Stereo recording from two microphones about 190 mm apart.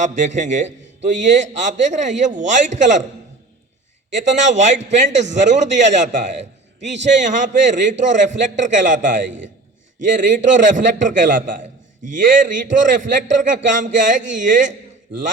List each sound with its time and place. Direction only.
0.3 s a man's voice: 40° right (ahead or behind)
4.1 s a man's voice: 40° right (ahead or behind)